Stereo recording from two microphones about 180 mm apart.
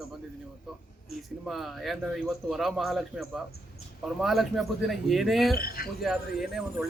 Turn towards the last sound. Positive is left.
turn(degrees=0)  # may be behind; listen again after turning